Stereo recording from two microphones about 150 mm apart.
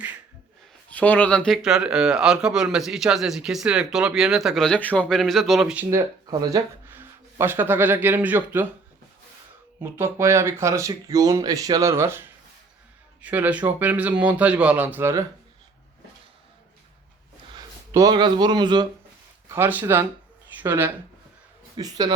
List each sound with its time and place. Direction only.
0.9 s speech: 10° left (ahead or behind)
1.6 s speech: 5° right (ahead or behind)
5.9 s speech: 20° right (ahead or behind)
9.8 s speech: 15° right (ahead or behind)
13.2 s speech: 10° right (ahead or behind)
17.9 s speech: 25° right (ahead or behind)
19.5 s speech: 15° right (ahead or behind)
21.8 s speech: 25° right (ahead or behind)